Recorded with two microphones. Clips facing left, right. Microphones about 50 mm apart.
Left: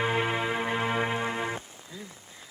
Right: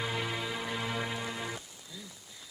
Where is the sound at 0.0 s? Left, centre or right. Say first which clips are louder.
Left 7 dB; left.